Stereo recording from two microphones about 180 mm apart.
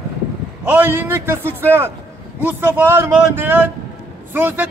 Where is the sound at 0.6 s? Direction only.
10° right (ahead or behind).